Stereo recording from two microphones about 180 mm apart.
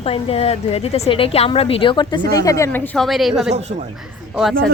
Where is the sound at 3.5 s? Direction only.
40° right (ahead or behind).